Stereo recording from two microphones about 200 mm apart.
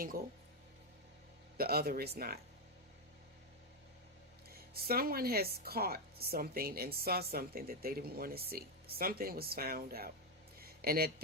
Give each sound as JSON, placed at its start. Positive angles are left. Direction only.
{"t": 1.5, "sound": "speech", "side_deg": -50}
{"t": 4.4, "sound": "speech", "side_deg": -50}
{"t": 10.6, "sound": "a sound", "side_deg": -50}